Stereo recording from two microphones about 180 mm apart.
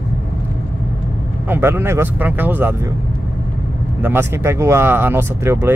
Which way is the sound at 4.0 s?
10° right (ahead or behind).